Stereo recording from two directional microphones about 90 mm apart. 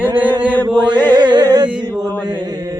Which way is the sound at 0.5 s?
20° left (ahead or behind).